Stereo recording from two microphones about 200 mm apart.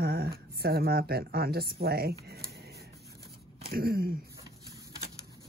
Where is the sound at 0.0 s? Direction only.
50° right (ahead or behind).